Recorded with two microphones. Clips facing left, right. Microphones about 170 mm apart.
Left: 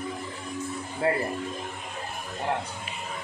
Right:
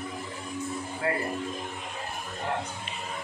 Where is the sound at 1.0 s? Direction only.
30° left (ahead or behind).